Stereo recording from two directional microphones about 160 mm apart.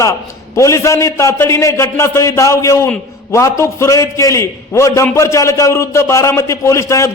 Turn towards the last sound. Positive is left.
turn(degrees=20)  # may be behind; listen again after turning